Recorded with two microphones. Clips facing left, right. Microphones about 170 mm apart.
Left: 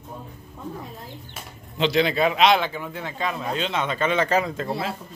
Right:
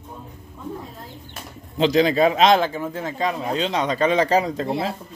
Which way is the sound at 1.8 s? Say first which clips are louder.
Right 4 dB; 40° right (ahead or behind).